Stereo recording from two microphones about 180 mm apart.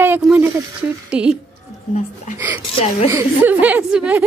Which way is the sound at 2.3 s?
15° right (ahead or behind).